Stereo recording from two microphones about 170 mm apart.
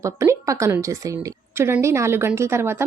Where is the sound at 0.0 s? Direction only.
15° right (ahead or behind).